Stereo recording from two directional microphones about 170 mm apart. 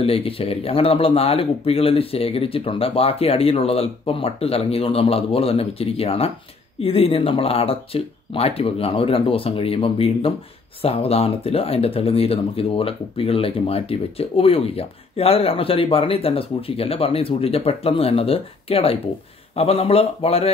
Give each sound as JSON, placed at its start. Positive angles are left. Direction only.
{"t": 0.0, "sound": "speech", "side_deg": 35}